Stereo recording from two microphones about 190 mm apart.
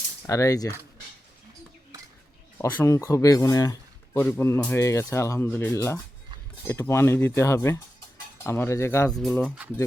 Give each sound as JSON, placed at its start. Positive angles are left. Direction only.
{"t": 0.3, "sound": "speech", "side_deg": 20}
{"t": 2.6, "sound": "speech", "side_deg": 15}
{"t": 9.1, "sound": "speech", "side_deg": 0}